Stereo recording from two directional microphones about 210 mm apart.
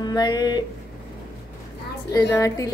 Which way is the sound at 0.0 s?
20° left (ahead or behind).